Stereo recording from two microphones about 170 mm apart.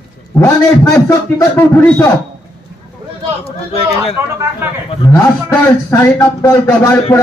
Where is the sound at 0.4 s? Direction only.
15° left (ahead or behind).